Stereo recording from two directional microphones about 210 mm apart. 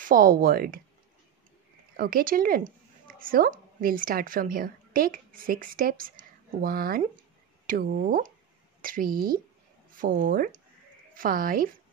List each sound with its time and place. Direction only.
0.0 s speech: 40° right (ahead or behind)
2.0 s a woman's voice: 45° right (ahead or behind)